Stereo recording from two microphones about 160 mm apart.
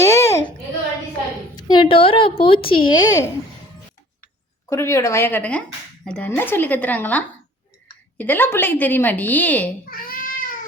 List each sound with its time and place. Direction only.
0.0 s a sound: 20° left (ahead or behind)
1.5 s speech: 25° left (ahead or behind)
4.7 s a woman's voice: 15° left (ahead or behind)
9.9 s cat: 65° left (ahead or behind)